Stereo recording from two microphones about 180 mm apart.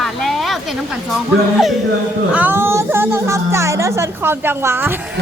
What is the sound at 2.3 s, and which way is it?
Speech, 10° right (ahead or behind).